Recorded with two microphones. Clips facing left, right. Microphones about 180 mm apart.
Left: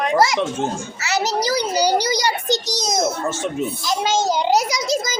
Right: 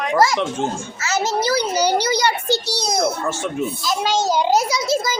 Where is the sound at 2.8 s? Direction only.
20° left (ahead or behind).